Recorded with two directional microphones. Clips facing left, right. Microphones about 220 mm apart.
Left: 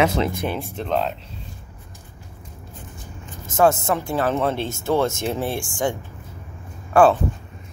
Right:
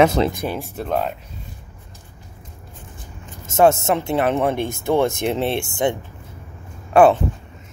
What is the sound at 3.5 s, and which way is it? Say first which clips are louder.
Speech: right 3 dB; 25° right (ahead or behind).